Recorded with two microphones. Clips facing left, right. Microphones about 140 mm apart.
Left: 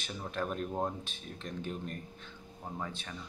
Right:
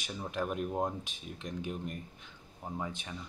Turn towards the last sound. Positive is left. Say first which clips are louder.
# right 1 dB
turn(degrees=-15)  # may be behind; listen again after turning